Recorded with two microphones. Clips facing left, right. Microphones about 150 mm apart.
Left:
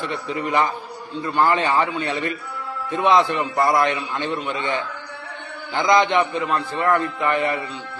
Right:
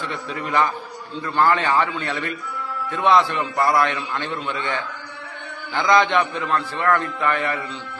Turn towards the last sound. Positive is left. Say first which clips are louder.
# left 2 dB
turn(degrees=20)  # may be behind; listen again after turning